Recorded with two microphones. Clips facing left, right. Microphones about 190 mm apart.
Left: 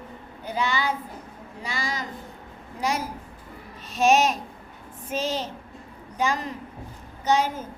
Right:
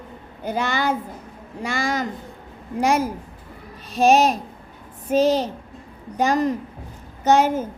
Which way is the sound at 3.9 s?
35° right (ahead or behind).